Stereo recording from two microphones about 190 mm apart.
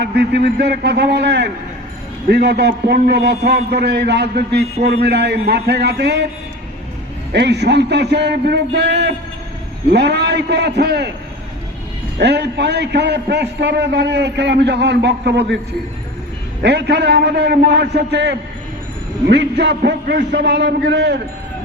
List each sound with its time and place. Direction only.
0.0 s a man's voice: 60° right (ahead or behind)
7.3 s a man's voice: 60° right (ahead or behind)
12.2 s a man's voice: 65° right (ahead or behind)
16.6 s a man's voice: 65° right (ahead or behind)